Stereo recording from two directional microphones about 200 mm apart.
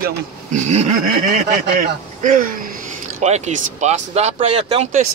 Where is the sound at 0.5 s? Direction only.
35° right (ahead or behind).